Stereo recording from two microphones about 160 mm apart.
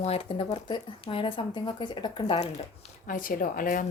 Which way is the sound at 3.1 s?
60° left (ahead or behind).